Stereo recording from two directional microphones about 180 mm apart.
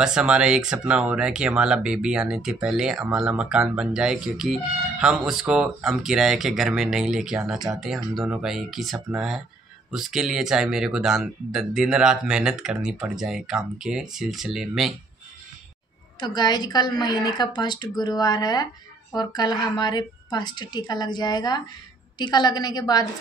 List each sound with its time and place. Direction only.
0.0 s speech: 5° right (ahead or behind)
16.2 s a woman's voice: 25° left (ahead or behind)